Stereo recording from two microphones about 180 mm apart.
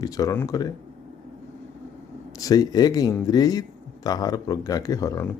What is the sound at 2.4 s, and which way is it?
A man's voice, 20° left (ahead or behind).